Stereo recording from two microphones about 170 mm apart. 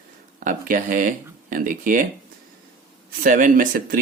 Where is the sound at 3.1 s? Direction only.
50° right (ahead or behind).